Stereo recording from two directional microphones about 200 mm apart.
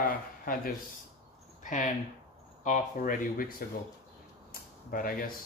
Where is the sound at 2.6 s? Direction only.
40° left (ahead or behind).